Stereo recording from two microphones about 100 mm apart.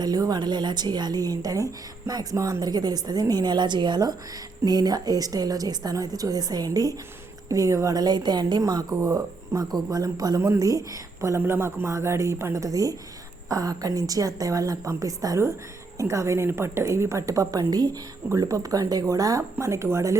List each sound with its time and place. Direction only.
0.0 s a woman's voice: 40° right (ahead or behind)